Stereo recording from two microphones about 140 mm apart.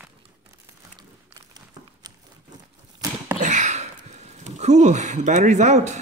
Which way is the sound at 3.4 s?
60° right (ahead or behind).